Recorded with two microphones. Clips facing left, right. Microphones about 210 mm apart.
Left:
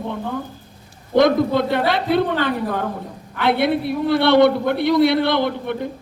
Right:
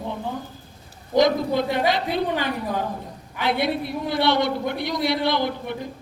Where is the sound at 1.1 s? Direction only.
60° left (ahead or behind).